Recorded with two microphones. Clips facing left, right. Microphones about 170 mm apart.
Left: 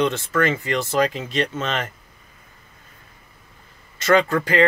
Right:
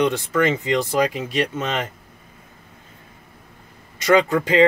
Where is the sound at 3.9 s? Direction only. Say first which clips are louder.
Right 1 dB; 15° right (ahead or behind).